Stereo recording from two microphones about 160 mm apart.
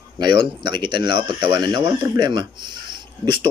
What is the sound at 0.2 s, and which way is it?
Speech, 25° right (ahead or behind).